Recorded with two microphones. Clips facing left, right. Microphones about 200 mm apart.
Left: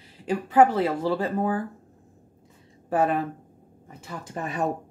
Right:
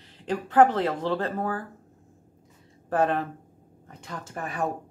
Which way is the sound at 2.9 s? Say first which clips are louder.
Left 1 dB; 10° left (ahead or behind).